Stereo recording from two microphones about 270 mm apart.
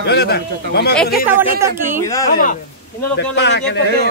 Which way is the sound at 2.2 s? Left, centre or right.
Left.